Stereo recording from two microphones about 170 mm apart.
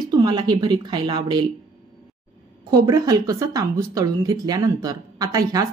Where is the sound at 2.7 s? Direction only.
20° right (ahead or behind).